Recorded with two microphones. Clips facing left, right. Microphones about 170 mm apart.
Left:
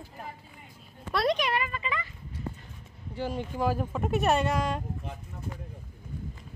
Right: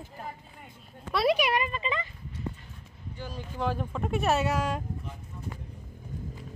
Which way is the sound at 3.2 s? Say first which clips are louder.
Left 8 dB; 70° left (ahead or behind).